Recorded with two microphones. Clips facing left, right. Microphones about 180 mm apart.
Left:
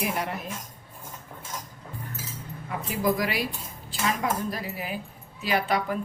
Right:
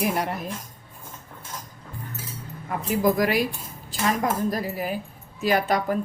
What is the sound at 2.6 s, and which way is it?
Speech, 45° right (ahead or behind).